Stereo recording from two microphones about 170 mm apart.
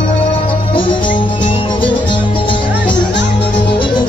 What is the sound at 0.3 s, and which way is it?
Music, 30° left (ahead or behind).